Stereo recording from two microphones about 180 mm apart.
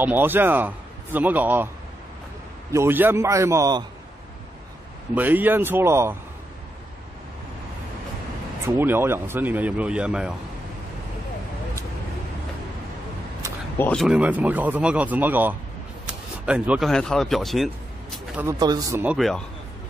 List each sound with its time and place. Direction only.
0.0 s speech: 10° right (ahead or behind)
2.7 s speech: 15° right (ahead or behind)
5.1 s speech: 10° right (ahead or behind)
8.6 s speech: 10° right (ahead or behind)
13.7 s speech: 10° left (ahead or behind)
14.0 s speech: 5° right (ahead or behind)
18.4 s speech: 20° right (ahead or behind)
19.0 s speech: centre (ahead or behind)